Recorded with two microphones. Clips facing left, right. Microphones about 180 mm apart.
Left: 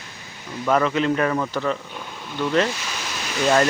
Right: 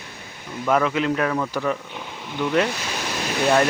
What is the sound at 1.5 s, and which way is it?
Speech, 10° right (ahead or behind).